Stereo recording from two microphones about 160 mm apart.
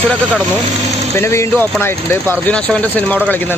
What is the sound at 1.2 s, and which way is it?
Speech, 15° left (ahead or behind).